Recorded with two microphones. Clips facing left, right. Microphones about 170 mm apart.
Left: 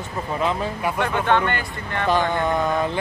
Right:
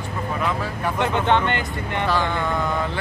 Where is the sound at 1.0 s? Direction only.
20° right (ahead or behind).